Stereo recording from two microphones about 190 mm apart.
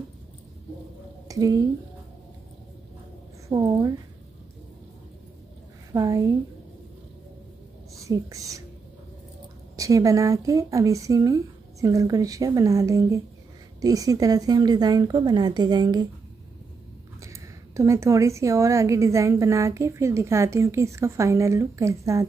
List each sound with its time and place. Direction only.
1.3 s speech: 20° right (ahead or behind)
3.4 s a woman's voice: 25° right (ahead or behind)
5.9 s a woman's voice: 20° right (ahead or behind)
7.9 s a woman's voice: 15° right (ahead or behind)
9.8 s a woman's voice: 15° right (ahead or behind)
17.2 s a woman's voice: 15° right (ahead or behind)